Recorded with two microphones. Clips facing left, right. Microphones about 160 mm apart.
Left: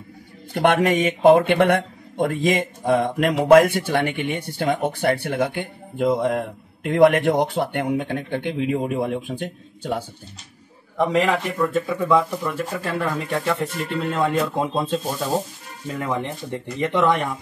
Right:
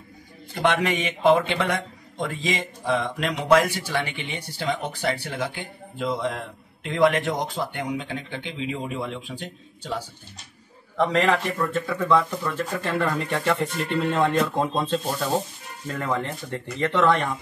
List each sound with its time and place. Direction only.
0.6 s speech: 50° left (ahead or behind)
11.0 s speech: 10° left (ahead or behind)